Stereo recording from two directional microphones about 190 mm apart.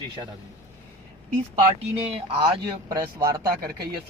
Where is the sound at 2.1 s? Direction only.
25° right (ahead or behind).